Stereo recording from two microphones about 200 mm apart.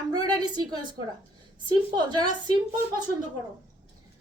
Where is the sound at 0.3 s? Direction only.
20° right (ahead or behind).